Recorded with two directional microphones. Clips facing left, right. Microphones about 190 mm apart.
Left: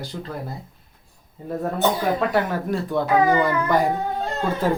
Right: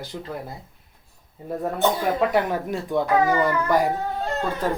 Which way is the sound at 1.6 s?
Centre (ahead or behind).